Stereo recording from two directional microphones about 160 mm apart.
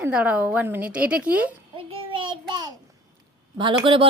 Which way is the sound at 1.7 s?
35° right (ahead or behind).